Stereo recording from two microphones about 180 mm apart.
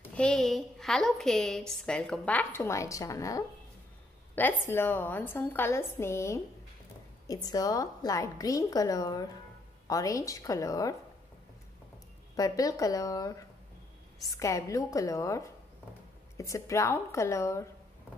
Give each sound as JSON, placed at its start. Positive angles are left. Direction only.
{"t": 0.1, "sound": "a woman's voice", "side_deg": 5}
{"t": 12.4, "sound": "a woman's voice", "side_deg": 20}